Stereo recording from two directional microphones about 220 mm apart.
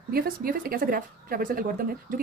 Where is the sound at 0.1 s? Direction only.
40° right (ahead or behind).